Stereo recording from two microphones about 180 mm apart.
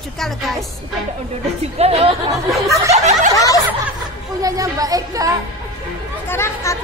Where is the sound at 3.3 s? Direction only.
20° left (ahead or behind).